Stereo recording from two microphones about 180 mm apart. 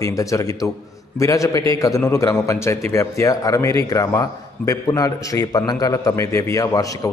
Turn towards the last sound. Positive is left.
turn(degrees=20)  # may be behind; listen again after turning